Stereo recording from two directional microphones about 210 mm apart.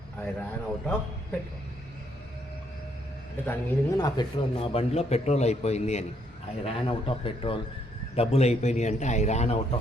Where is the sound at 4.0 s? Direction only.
25° left (ahead or behind).